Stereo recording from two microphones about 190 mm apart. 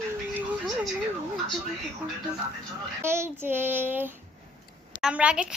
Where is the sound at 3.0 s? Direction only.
15° right (ahead or behind).